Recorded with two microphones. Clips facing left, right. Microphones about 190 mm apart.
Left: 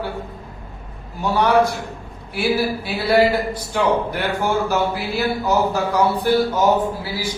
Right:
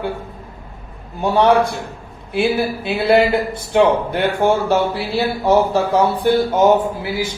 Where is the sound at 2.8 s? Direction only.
25° right (ahead or behind).